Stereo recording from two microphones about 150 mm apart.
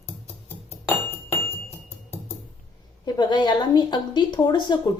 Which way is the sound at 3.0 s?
30° left (ahead or behind).